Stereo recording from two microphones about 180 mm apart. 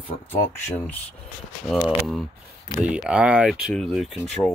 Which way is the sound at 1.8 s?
Centre (ahead or behind).